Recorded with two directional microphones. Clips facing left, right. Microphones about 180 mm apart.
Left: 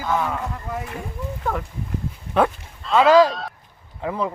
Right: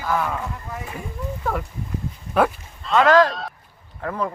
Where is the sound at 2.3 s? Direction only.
5° right (ahead or behind).